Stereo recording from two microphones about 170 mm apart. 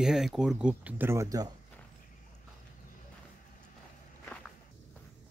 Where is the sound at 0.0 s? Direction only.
Centre (ahead or behind); by 1.5 s 20° right (ahead or behind).